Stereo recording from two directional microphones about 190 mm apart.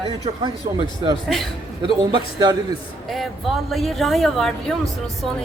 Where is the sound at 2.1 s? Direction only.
25° right (ahead or behind).